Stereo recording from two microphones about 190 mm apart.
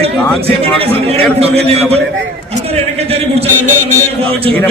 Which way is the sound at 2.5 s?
30° right (ahead or behind).